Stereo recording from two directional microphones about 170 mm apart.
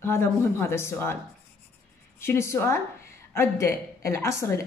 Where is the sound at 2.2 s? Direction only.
15° left (ahead or behind).